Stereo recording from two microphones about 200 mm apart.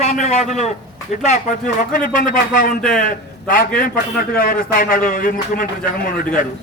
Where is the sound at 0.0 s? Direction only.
35° left (ahead or behind).